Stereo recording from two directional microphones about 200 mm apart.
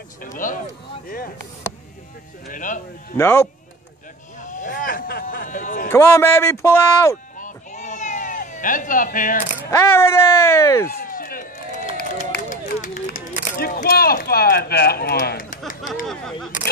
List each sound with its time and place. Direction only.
0.2 s speech: 40° left (ahead or behind)
2.4 s speech: 40° left (ahead or behind)
3.2 s speech: 10° left (ahead or behind)
4.4 s speech: 40° left (ahead or behind)
5.9 s speech: 10° left (ahead or behind)
7.3 s a sound: 40° left (ahead or behind)
9.7 s speech: 15° left (ahead or behind)
10.9 s run: 45° left (ahead or behind)
13.6 s speech: 45° left (ahead or behind)
16.1 s speech: centre (ahead or behind)